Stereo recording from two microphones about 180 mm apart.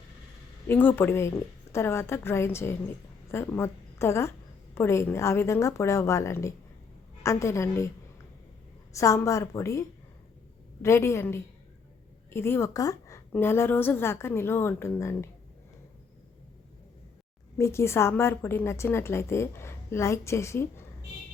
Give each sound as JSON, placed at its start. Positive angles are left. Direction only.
{"t": 0.7, "sound": "a woman's voice", "side_deg": 10}
{"t": 8.9, "sound": "a woman's voice", "side_deg": 15}
{"t": 10.8, "sound": "a woman's voice", "side_deg": 15}
{"t": 17.6, "sound": "a woman's voice", "side_deg": 15}